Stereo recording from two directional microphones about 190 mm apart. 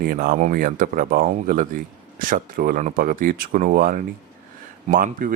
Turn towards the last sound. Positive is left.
turn(degrees=-45)  # may be behind; listen again after turning